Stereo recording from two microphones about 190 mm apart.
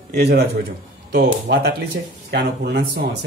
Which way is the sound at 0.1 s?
60° right (ahead or behind).